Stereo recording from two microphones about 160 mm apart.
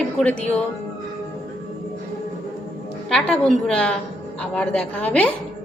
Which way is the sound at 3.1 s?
5° left (ahead or behind).